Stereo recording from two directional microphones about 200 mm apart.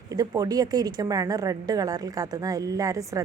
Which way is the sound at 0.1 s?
20° right (ahead or behind).